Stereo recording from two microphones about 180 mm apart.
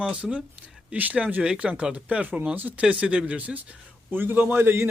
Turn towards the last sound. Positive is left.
turn(degrees=-10)  # may be behind; listen again after turning